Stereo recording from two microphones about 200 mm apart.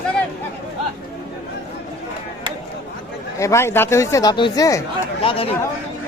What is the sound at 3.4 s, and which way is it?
Speech, 15° left (ahead or behind).